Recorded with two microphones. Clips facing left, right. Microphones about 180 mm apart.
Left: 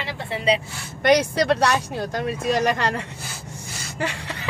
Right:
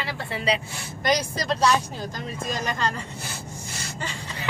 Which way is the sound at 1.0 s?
65° left (ahead or behind).